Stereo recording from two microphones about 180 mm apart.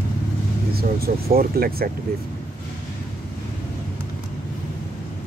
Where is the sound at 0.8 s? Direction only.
55° right (ahead or behind).